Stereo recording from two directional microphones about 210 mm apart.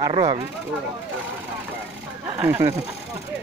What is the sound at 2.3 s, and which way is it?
Speech, 10° right (ahead or behind).